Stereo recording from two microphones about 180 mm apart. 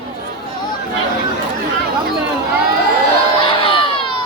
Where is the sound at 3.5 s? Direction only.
30° left (ahead or behind).